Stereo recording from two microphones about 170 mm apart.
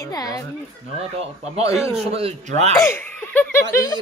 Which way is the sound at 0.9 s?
35° right (ahead or behind).